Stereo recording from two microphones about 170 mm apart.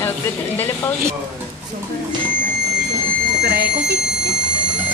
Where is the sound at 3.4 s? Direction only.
70° right (ahead or behind).